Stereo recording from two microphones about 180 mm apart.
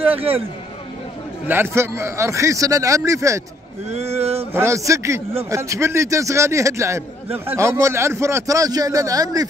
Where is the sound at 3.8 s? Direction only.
35° right (ahead or behind).